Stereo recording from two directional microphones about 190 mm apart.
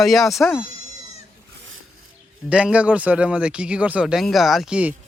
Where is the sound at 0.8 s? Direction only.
35° right (ahead or behind).